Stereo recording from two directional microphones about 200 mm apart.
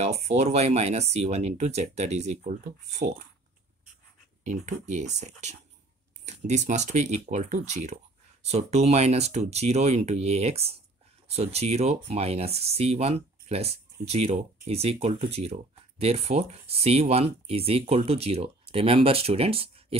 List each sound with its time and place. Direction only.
0.0 s speech: 30° right (ahead or behind)
4.5 s speech: 35° right (ahead or behind)